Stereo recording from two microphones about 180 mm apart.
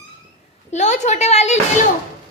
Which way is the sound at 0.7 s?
40° left (ahead or behind).